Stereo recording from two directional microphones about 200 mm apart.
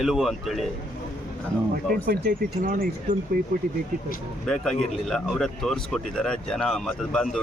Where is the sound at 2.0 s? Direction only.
45° right (ahead or behind).